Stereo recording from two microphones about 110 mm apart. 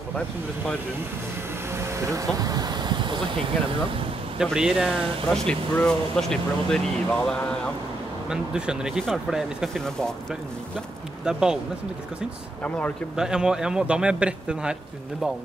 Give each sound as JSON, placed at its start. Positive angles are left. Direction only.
{"t": 1.8, "sound": "speech", "side_deg": -30}
{"t": 4.4, "sound": "speech", "side_deg": -5}
{"t": 5.3, "sound": "speech", "side_deg": 5}
{"t": 8.3, "sound": "speech", "side_deg": -5}
{"t": 11.2, "sound": "speech", "side_deg": -5}
{"t": 12.6, "sound": "speech", "side_deg": 10}
{"t": 13.1, "sound": "speech", "side_deg": -5}